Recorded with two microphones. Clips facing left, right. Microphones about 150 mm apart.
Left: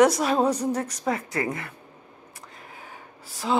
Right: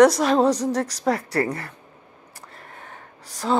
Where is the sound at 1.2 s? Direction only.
35° right (ahead or behind).